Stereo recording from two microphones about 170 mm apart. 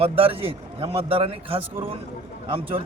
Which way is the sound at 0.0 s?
35° right (ahead or behind).